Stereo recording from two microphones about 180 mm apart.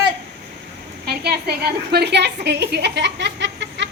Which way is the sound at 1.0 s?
65° right (ahead or behind).